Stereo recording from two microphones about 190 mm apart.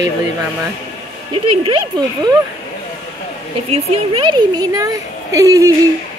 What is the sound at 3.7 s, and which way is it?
A woman's voice, 30° right (ahead or behind).